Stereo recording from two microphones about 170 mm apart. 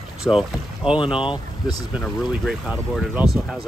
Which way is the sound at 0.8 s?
30° left (ahead or behind).